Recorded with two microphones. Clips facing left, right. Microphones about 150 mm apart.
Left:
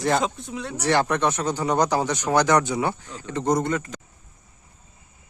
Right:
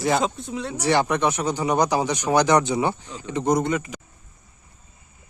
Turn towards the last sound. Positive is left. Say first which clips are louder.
# right 1 dB
turn(degrees=-10)  # may be behind; listen again after turning